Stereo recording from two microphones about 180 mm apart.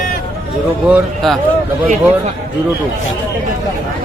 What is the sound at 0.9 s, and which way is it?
Speech, centre (ahead or behind).